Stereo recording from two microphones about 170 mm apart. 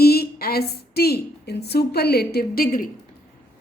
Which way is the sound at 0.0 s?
65° left (ahead or behind).